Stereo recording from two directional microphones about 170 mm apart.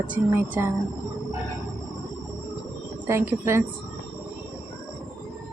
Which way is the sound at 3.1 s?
15° right (ahead or behind).